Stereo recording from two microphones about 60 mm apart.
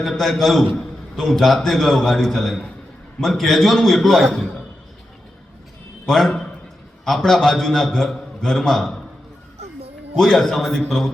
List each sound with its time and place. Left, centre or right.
0.0 s a man's voice: centre
6.1 s a man's voice: centre
10.2 s a man's voice: centre